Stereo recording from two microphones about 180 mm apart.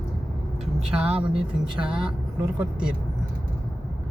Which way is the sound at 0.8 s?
35° right (ahead or behind).